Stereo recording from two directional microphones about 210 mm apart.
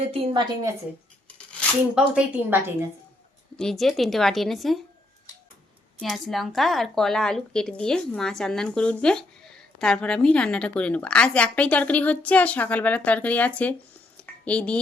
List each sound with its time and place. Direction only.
0.0 s a woman's voice: 30° right (ahead or behind)
2.0 s a woman's voice: 5° right (ahead or behind)
3.6 s speech: centre (ahead or behind)
6.0 s speech: centre (ahead or behind)